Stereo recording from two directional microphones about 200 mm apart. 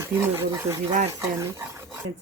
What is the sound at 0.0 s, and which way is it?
Speech, 10° right (ahead or behind).